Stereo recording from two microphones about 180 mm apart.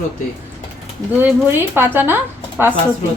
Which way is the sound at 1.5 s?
10° right (ahead or behind).